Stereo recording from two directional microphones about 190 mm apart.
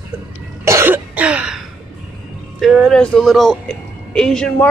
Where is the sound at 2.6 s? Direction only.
Centre (ahead or behind).